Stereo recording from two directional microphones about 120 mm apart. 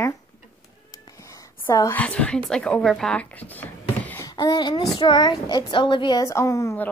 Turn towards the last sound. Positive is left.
turn(degrees=25)  # may be behind; listen again after turning